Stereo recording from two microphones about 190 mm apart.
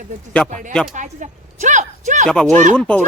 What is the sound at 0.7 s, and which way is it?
Speech, 5° left (ahead or behind).